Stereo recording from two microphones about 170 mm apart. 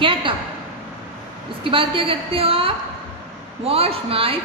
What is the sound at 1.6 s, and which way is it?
A woman's voice, 30° right (ahead or behind).